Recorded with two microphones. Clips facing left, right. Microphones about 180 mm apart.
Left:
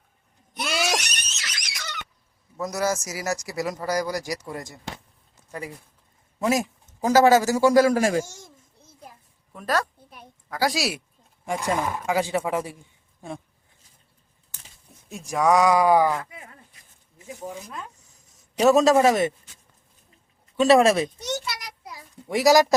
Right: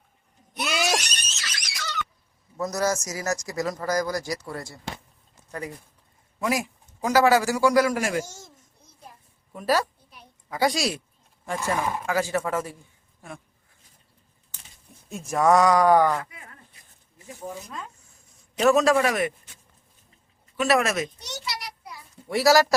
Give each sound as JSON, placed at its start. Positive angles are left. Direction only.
{"t": 0.6, "sound": "a sound", "side_deg": 0}
{"t": 1.1, "sound": "squeal", "side_deg": 15}
{"t": 2.6, "sound": "speech", "side_deg": 10}
{"t": 6.4, "sound": "a man's voice", "side_deg": 25}
{"t": 9.5, "sound": "speech", "side_deg": -5}
{"t": 15.1, "sound": "speech", "side_deg": 0}
{"t": 17.2, "sound": "speech", "side_deg": 20}
{"t": 18.7, "sound": "a man's voice", "side_deg": 25}
{"t": 20.6, "sound": "a man's voice", "side_deg": 30}
{"t": 21.3, "sound": "child singing", "side_deg": 50}
{"t": 22.3, "sound": "speech", "side_deg": 15}